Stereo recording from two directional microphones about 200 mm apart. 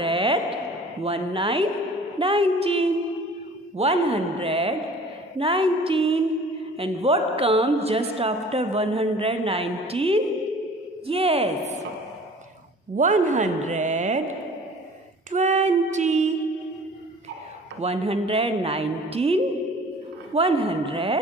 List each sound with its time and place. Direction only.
0.0 s a sound: 25° right (ahead or behind)
1.0 s a woman's voice: 30° right (ahead or behind)
12.9 s a woman's voice: 40° right (ahead or behind)
15.3 s a woman's voice: 35° right (ahead or behind)
17.7 s a woman's voice: 30° right (ahead or behind)